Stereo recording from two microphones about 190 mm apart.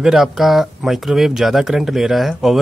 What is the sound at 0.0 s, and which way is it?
Speech, centre (ahead or behind).